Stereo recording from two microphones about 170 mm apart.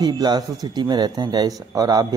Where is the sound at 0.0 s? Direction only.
25° right (ahead or behind).